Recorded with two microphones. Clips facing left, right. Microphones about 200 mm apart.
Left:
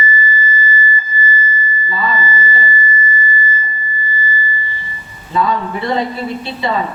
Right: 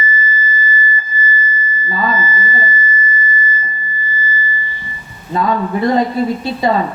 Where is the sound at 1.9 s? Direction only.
45° right (ahead or behind).